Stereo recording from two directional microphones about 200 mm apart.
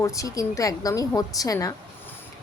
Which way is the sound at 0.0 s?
15° left (ahead or behind).